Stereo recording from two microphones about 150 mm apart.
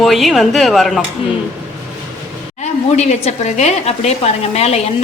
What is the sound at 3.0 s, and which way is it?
A woman's voice, 50° left (ahead or behind).